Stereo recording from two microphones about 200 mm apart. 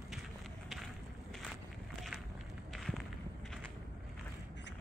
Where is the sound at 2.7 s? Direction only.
Centre (ahead or behind).